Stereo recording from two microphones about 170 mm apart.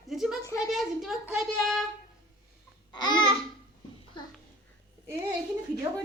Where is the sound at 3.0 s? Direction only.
25° left (ahead or behind).